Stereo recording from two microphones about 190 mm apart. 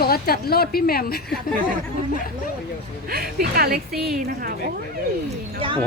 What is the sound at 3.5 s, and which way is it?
Speech, 50° right (ahead or behind).